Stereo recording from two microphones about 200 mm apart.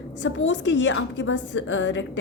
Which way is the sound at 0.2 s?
65° left (ahead or behind).